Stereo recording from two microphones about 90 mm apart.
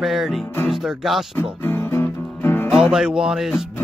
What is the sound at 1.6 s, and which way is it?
Music, 25° left (ahead or behind).